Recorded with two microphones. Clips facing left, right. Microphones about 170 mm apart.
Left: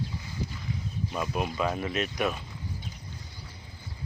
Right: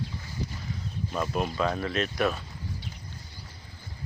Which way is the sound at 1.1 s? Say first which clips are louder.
Right 2 dB; 10° left (ahead or behind).